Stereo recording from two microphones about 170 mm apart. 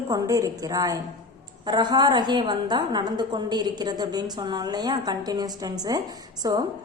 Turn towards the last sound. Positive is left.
turn(degrees=-20)  # may be behind; listen again after turning